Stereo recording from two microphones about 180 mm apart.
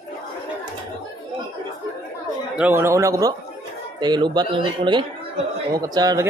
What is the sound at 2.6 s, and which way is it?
A man's voice, 10° right (ahead or behind).